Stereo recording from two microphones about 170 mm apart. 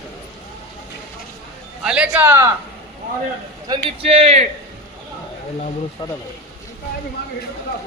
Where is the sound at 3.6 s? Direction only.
30° right (ahead or behind).